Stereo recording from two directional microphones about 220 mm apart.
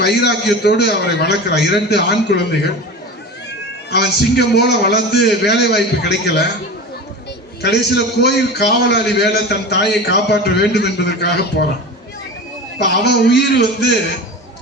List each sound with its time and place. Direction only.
0.0 s a man's voice: 50° left (ahead or behind)
3.8 s a man's voice: 45° left (ahead or behind)
7.6 s a man's voice: 50° left (ahead or behind)
12.8 s a man's voice: 50° left (ahead or behind)